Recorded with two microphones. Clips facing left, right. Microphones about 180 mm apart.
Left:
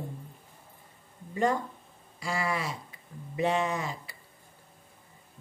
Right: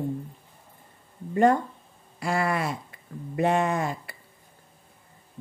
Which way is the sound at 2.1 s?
55° right (ahead or behind).